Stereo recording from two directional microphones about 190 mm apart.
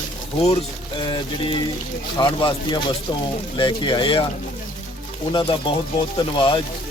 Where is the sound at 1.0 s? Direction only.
25° left (ahead or behind).